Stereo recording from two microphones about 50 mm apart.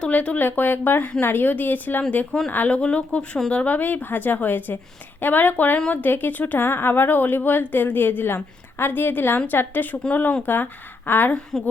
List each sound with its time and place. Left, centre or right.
0.1 s speech: left
0.3 s speech: left
11.5 s speech: centre